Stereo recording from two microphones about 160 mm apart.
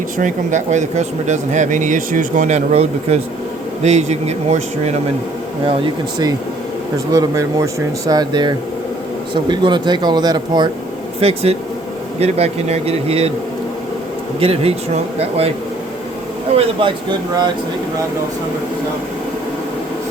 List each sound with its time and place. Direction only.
0.2 s speech: 50° right (ahead or behind)
5.6 s speech: 30° right (ahead or behind)
11.2 s speech: 40° right (ahead or behind)
14.3 s speech: 35° right (ahead or behind)
16.6 s speech: 30° right (ahead or behind)